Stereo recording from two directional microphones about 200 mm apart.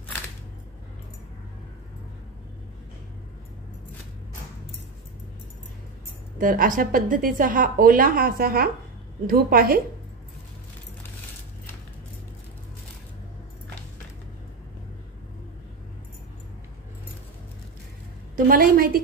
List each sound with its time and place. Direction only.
6.3 s a woman's voice: 45° right (ahead or behind)
18.3 s a woman's voice: 45° right (ahead or behind)